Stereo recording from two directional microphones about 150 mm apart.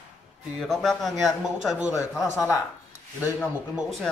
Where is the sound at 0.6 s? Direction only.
Centre (ahead or behind).